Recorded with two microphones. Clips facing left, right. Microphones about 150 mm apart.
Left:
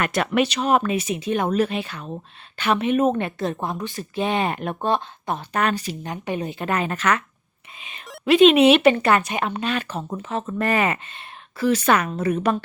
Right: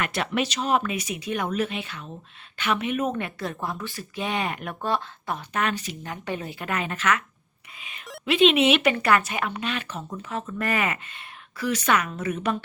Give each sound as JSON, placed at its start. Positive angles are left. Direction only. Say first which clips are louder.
{"t": 0.0, "sound": "speech", "louder": "left 5 dB", "side_deg": 50}
{"t": 0.8, "sound": "speech", "louder": "left 6 dB", "side_deg": 30}
{"t": 5.5, "sound": "speech", "louder": "left 4 dB", "side_deg": 40}
{"t": 7.8, "sound": "a sound", "louder": "left 2 dB", "side_deg": 25}
{"t": 8.2, "sound": "speech", "louder": "left 6 dB", "side_deg": 45}